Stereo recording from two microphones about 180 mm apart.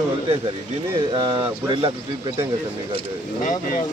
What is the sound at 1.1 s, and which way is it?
Speech, 25° right (ahead or behind).